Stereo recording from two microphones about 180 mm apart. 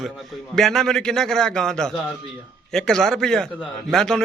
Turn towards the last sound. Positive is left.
turn(degrees=5)  # may be behind; listen again after turning